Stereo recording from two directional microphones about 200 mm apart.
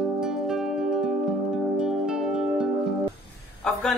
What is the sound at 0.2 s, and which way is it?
Music, centre (ahead or behind).